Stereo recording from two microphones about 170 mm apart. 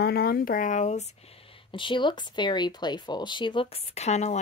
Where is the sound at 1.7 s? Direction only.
30° left (ahead or behind).